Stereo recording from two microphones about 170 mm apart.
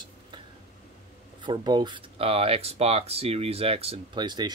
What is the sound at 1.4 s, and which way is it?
Speech, 25° right (ahead or behind).